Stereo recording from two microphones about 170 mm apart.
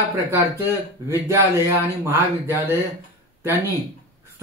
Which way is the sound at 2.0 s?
15° right (ahead or behind).